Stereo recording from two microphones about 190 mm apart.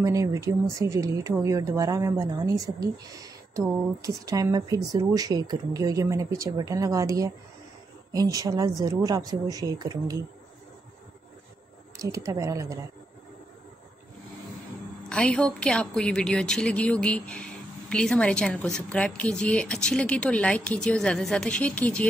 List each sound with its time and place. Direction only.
0.0 s speech: 15° right (ahead or behind)
12.0 s speech: 15° right (ahead or behind)
15.0 s a woman's voice: 5° left (ahead or behind)